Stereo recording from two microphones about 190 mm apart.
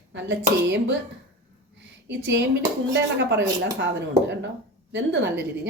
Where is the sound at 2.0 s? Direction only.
65° right (ahead or behind).